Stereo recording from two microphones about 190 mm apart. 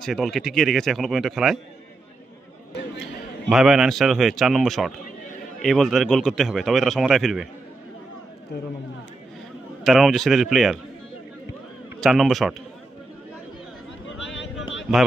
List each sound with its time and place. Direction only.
0.0 s a man's voice: centre (ahead or behind)
3.4 s a man's voice: centre (ahead or behind)
9.8 s a man's voice: centre (ahead or behind)
12.0 s a man's voice: centre (ahead or behind)
14.2 s a sound: 70° left (ahead or behind)